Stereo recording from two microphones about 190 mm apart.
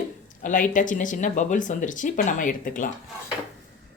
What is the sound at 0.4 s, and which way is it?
Speech, 45° left (ahead or behind).